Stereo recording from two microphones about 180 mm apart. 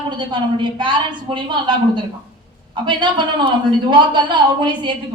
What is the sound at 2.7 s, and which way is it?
A woman's voice, 25° right (ahead or behind).